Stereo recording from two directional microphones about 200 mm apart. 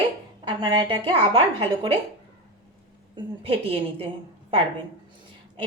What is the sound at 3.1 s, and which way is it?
Speech, 25° right (ahead or behind).